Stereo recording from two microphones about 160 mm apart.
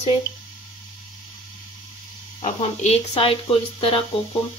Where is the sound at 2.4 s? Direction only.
40° left (ahead or behind).